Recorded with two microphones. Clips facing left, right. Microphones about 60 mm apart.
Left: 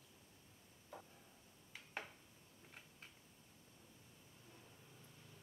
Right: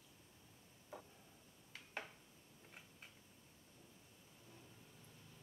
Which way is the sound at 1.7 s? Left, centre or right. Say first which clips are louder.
Even; centre.